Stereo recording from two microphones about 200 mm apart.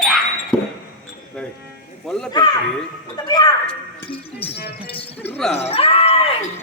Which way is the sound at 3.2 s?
20° left (ahead or behind).